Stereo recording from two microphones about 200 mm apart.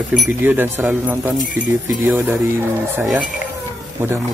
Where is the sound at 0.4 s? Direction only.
10° right (ahead or behind).